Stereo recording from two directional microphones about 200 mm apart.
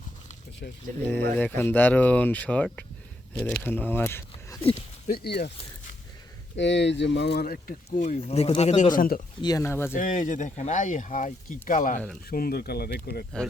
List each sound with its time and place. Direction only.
0.6 s speech: 50° left (ahead or behind)
1.0 s speech: 10° left (ahead or behind)
5.0 s speech: 50° left (ahead or behind)
6.6 s speech: 60° left (ahead or behind); by 8.9 s 35° left (ahead or behind)
9.0 s speech: 45° left (ahead or behind)
9.4 s speech: 15° left (ahead or behind)
10.0 s speech: 40° left (ahead or behind)